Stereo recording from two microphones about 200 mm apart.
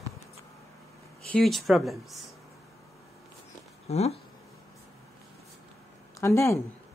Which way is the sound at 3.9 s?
30° left (ahead or behind).